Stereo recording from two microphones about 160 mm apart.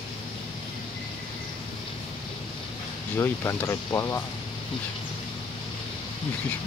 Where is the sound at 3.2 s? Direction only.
15° left (ahead or behind).